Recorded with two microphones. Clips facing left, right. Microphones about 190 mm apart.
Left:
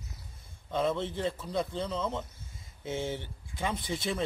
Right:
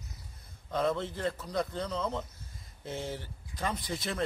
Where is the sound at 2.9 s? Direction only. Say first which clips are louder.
Left 3 dB; 25° left (ahead or behind).